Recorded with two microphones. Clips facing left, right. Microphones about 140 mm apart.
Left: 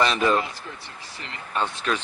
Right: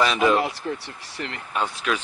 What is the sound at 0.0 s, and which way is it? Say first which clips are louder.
Speech: right 2 dB; 5° right (ahead or behind).